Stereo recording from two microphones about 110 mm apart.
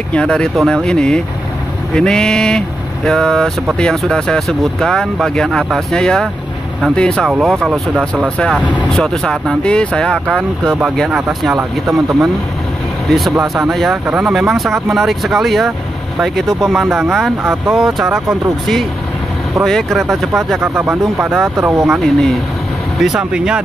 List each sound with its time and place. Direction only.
0.1 s speech: 10° left (ahead or behind)
11.1 s speech: 10° right (ahead or behind)
13.1 s speech: centre (ahead or behind)
19.6 s speech: 5° left (ahead or behind)
20.5 s speech: 20° right (ahead or behind)
21.8 s speech: centre (ahead or behind)